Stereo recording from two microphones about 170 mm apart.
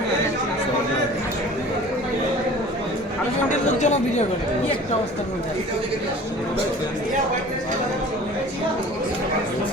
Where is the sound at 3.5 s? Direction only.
45° left (ahead or behind).